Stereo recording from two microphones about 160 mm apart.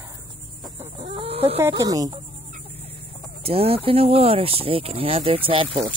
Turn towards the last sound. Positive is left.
turn(degrees=-35)  # may be behind; listen again after turning